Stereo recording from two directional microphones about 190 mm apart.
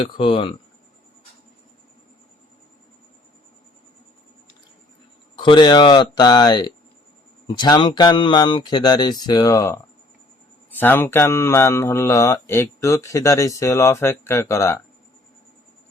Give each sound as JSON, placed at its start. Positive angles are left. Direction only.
{"t": 0.0, "sound": "speech", "side_deg": 25}
{"t": 5.4, "sound": "speech", "side_deg": 25}